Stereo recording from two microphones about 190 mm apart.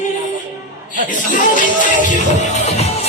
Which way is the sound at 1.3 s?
45° left (ahead or behind).